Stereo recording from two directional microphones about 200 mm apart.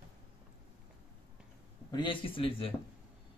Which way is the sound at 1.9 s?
25° left (ahead or behind).